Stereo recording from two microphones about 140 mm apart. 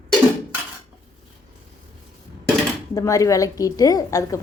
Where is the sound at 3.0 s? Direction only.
25° left (ahead or behind).